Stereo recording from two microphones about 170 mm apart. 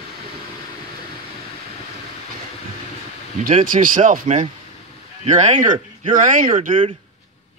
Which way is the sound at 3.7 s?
50° right (ahead or behind).